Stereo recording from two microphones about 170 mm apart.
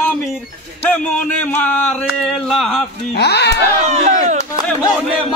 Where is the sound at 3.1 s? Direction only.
80° left.